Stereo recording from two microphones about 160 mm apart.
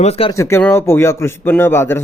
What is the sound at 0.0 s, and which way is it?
Speech, 35° left (ahead or behind).